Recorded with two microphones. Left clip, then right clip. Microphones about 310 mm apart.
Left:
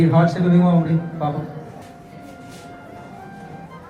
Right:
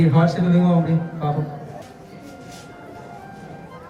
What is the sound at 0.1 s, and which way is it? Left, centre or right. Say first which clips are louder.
A man's voice: left 2 dB; centre.